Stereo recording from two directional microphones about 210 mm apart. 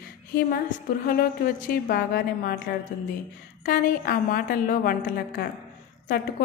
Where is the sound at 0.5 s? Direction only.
45° left (ahead or behind).